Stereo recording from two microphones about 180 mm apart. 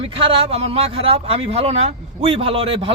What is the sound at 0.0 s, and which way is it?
Speech, 30° right (ahead or behind).